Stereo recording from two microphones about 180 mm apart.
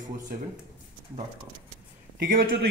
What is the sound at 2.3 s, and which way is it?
Speech, 55° right (ahead or behind).